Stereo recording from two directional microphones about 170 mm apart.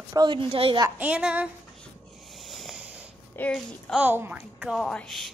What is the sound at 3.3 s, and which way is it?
Speech, 5° left (ahead or behind).